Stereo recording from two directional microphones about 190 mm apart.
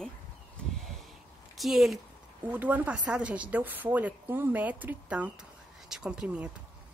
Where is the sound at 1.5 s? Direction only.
Centre (ahead or behind).